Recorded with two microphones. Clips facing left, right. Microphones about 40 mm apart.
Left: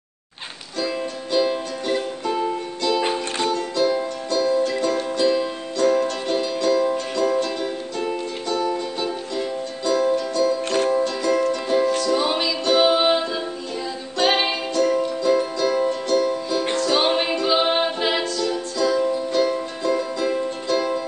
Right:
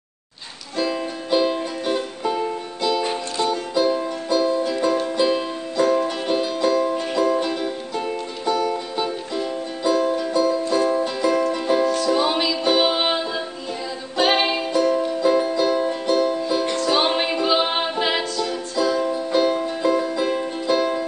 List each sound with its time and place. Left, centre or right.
0.7 s music: centre
3.4 s music: centre
8.5 s music: centre
8.9 s music: centre
10.6 s music: left
10.9 s music: centre
16.7 s music: centre